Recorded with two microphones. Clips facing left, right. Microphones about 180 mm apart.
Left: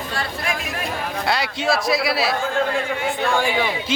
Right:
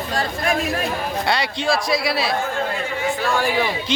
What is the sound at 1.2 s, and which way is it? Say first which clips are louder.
A man's voice: left 1 dB; centre (ahead or behind).